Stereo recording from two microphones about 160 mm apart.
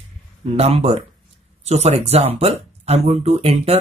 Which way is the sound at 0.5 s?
40° right (ahead or behind).